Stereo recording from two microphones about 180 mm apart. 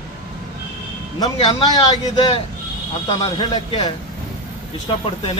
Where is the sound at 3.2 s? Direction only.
25° left (ahead or behind).